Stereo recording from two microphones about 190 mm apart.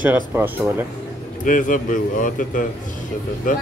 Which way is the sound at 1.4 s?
45° left (ahead or behind).